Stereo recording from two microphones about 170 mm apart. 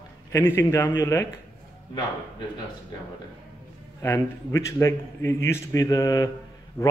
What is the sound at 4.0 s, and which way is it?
A man's voice, 15° left (ahead or behind).